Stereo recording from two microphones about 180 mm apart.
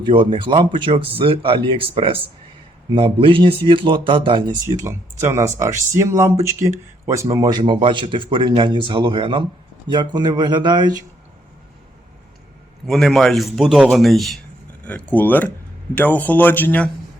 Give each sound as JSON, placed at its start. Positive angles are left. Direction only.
{"t": 0.0, "sound": "speech", "side_deg": -25}
{"t": 12.9, "sound": "a man's voice", "side_deg": 0}